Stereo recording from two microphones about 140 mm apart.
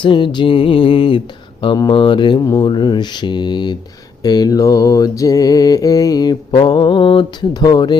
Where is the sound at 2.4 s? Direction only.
25° left (ahead or behind).